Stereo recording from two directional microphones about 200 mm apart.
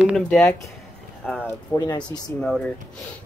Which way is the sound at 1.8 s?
20° left (ahead or behind).